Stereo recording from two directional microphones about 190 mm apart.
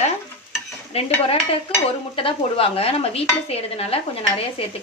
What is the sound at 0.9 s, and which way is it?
Stir, 30° left (ahead or behind).